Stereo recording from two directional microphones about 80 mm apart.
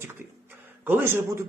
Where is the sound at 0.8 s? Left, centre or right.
Right.